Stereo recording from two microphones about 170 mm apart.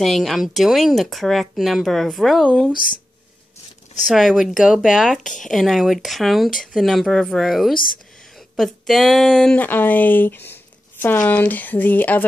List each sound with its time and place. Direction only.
0.0 s speech: centre (ahead or behind)
4.1 s speech: centre (ahead or behind)
5.2 s speech: 50° left (ahead or behind)
5.5 s speech: centre (ahead or behind)